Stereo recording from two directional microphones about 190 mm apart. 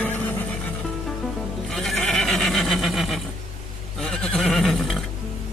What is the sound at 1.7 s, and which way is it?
Neigh, centre (ahead or behind).